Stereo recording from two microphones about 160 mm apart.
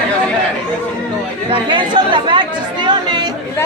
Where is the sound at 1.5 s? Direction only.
30° right (ahead or behind).